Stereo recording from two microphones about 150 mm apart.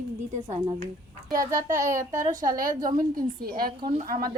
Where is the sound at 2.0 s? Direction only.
55° right (ahead or behind).